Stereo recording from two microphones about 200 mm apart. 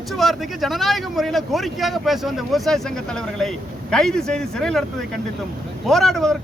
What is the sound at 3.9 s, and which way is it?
Speech, 5° left (ahead or behind).